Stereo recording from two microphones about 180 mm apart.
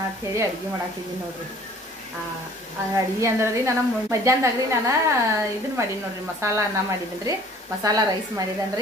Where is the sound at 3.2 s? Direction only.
15° right (ahead or behind).